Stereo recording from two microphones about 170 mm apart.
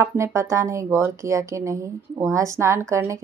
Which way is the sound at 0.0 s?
15° right (ahead or behind).